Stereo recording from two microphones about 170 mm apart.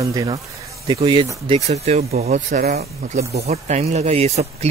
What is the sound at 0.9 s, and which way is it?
Speech, 35° right (ahead or behind).